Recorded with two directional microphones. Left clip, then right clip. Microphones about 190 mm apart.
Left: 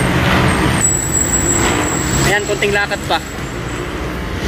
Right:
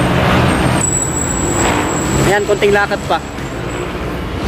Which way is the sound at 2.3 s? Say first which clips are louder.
Right 5 dB; 25° right (ahead or behind).